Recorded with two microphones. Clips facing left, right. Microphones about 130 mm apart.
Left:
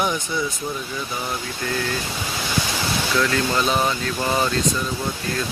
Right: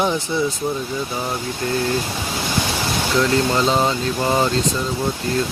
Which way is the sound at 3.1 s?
25° right (ahead or behind).